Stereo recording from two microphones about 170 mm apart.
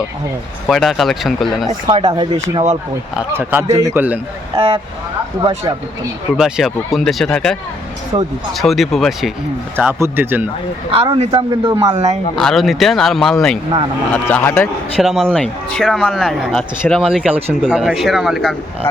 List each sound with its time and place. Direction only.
0.7 s speech: centre (ahead or behind)
1.6 s speech: 25° right (ahead or behind)
3.2 s speech: 10° right (ahead or behind)
5.4 s speech: 25° right (ahead or behind)
6.3 s speech: centre (ahead or behind)
8.1 s speech: 30° right (ahead or behind)
8.5 s speech: centre (ahead or behind)
9.7 s speech: 10° right (ahead or behind)
11.2 s speech: 30° right (ahead or behind)
12.4 s speech: centre (ahead or behind)
14.9 s speech: centre (ahead or behind)